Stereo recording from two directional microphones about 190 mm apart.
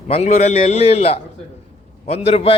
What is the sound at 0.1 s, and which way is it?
A man's voice, 35° left (ahead or behind).